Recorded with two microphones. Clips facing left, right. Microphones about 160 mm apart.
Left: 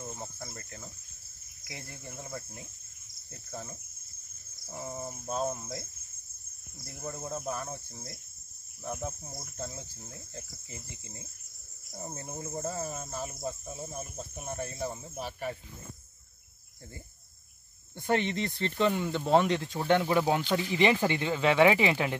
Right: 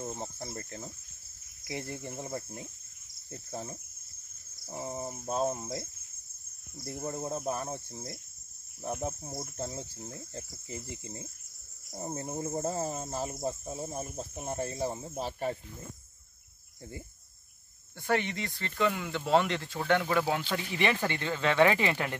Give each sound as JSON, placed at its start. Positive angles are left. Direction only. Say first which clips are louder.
{"t": 0.0, "sound": "cricket", "louder": "right 3 dB", "side_deg": -25}
{"t": 7.0, "sound": "cricket", "louder": "right 2 dB", "side_deg": -25}
{"t": 17.9, "sound": "speech", "louder": "left 2 dB", "side_deg": 20}